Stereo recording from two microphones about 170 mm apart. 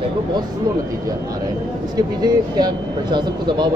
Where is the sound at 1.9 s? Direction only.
25° right (ahead or behind).